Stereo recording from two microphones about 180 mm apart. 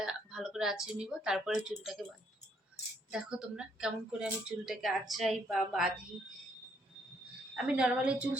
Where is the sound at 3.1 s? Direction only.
5° right (ahead or behind).